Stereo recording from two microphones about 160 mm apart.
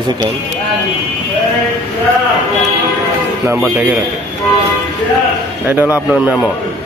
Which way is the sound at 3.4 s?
10° right (ahead or behind).